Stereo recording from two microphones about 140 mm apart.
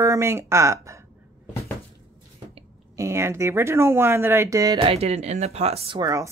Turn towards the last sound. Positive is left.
turn(degrees=-20)  # may be behind; listen again after turning